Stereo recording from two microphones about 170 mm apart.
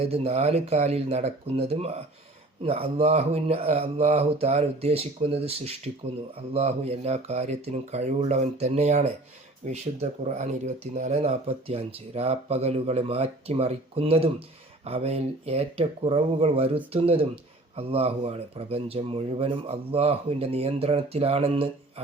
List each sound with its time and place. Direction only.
0.0 s speech: 35° right (ahead or behind)